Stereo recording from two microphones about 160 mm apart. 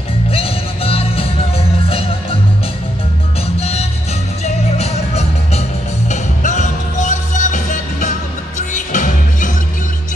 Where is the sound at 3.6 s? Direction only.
40° left (ahead or behind).